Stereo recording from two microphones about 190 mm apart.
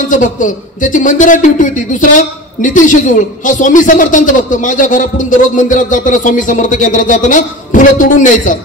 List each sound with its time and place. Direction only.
0.1 s a man's voice: 45° left (ahead or behind)